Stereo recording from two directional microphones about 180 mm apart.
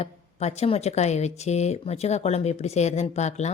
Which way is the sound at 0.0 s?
35° left (ahead or behind).